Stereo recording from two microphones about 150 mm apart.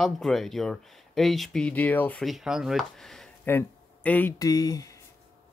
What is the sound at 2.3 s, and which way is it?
Speech, centre (ahead or behind).